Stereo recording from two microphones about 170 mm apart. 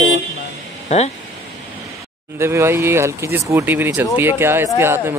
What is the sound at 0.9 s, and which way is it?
Speech, 40° left (ahead or behind).